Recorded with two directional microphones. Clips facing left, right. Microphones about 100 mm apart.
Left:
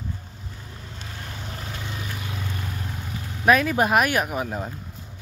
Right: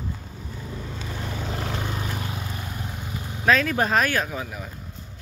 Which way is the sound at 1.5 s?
85° right.